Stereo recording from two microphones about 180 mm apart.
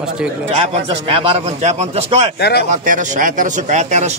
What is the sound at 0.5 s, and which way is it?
A man's voice, 30° right (ahead or behind).